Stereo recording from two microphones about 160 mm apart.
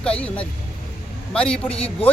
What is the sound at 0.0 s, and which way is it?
A man's voice, 10° left (ahead or behind).